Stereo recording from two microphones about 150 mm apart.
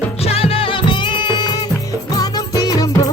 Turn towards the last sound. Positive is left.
turn(degrees=25)  # may be behind; listen again after turning